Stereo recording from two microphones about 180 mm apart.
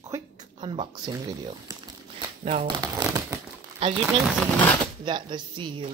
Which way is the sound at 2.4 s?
35° right (ahead or behind).